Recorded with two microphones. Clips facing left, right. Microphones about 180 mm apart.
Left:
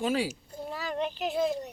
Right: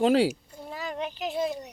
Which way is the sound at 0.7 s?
Centre (ahead or behind).